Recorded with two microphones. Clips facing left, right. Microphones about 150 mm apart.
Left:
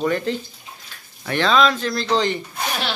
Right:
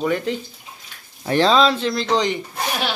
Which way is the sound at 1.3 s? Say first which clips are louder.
Right 2 dB; 35° right (ahead or behind).